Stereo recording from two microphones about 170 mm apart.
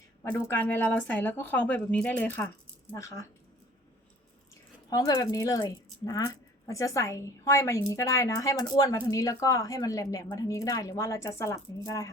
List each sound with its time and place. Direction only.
0.3 s speech: 15° left (ahead or behind)
4.9 s speech: 20° left (ahead or behind)